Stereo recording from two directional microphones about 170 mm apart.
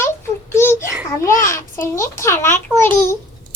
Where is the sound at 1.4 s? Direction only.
15° left (ahead or behind).